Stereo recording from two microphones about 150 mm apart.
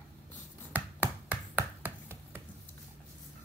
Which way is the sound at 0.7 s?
10° right (ahead or behind).